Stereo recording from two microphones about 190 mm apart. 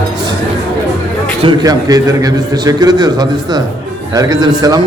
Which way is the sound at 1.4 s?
20° right (ahead or behind).